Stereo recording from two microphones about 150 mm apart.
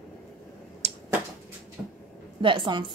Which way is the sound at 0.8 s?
45° right (ahead or behind).